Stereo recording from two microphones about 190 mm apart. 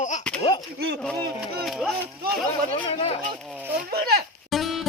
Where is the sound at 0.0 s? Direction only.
40° left (ahead or behind).